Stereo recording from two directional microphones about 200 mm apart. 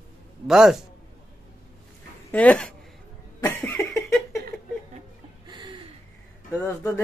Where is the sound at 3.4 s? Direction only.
15° left (ahead or behind).